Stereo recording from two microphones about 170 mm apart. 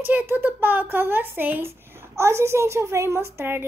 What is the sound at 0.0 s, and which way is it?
A woman's voice, 10° right (ahead or behind).